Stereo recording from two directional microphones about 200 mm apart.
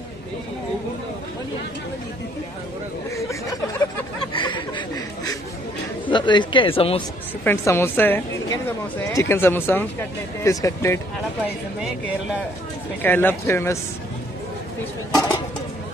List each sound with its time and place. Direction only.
3.2 s a sound: 15° left (ahead or behind)
6.0 s speech: 25° left (ahead or behind)
7.4 s a woman's voice: 10° left (ahead or behind)
13.0 s a woman's voice: 10° left (ahead or behind)